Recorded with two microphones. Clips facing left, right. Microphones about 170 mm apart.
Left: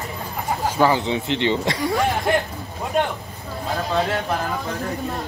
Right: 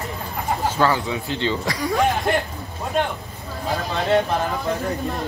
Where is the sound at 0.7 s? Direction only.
15° left (ahead or behind).